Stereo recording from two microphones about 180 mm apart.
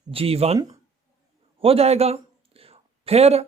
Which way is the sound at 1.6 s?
35° right (ahead or behind).